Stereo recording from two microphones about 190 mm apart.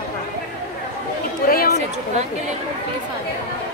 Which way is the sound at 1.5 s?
50° left (ahead or behind).